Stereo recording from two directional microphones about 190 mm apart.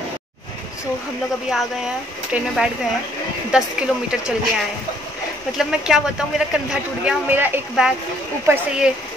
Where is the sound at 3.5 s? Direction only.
5° right (ahead or behind).